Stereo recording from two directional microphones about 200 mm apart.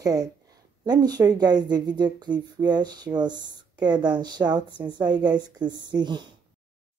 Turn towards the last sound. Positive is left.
turn(degrees=-20)  # may be behind; listen again after turning